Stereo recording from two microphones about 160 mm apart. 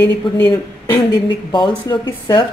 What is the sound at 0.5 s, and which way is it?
Speech, 25° left (ahead or behind).